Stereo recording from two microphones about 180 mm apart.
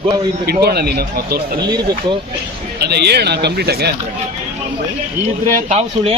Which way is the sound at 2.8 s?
65° right (ahead or behind).